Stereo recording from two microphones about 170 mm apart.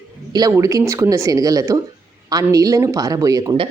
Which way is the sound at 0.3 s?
20° right (ahead or behind).